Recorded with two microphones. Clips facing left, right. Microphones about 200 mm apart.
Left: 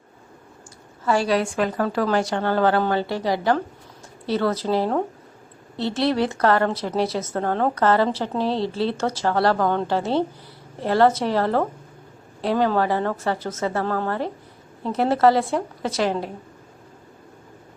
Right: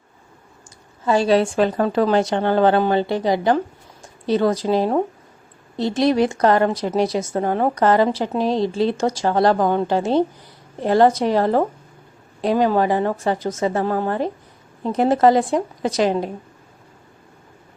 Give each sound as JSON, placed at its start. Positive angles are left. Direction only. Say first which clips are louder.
{"t": 1.0, "sound": "a woman's voice", "louder": "right 4 dB", "side_deg": -20}